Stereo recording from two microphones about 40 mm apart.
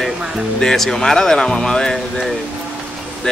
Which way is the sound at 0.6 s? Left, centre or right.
Centre.